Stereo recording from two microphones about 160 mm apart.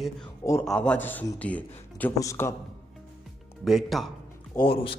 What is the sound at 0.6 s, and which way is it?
Speech, 5° left (ahead or behind).